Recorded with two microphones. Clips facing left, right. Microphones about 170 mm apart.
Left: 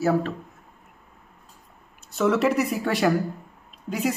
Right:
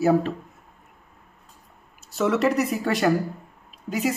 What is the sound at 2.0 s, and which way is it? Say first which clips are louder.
Speech: even; centre (ahead or behind).